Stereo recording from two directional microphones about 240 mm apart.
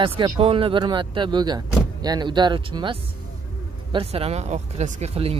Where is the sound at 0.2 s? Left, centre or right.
Right.